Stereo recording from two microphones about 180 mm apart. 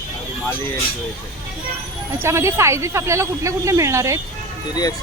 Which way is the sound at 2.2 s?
15° right (ahead or behind).